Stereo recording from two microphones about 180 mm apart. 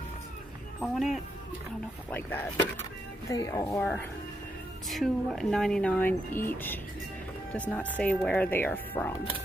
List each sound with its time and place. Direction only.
0.7 s a woman's voice: centre (ahead or behind)
2.0 s speech: 10° left (ahead or behind)
4.8 s a woman's voice: centre (ahead or behind)